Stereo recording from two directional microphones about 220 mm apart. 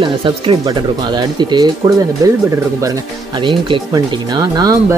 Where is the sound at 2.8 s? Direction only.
20° right (ahead or behind).